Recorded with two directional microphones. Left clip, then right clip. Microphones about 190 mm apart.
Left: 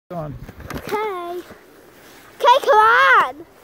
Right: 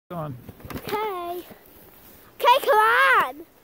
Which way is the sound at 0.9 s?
10° right (ahead or behind).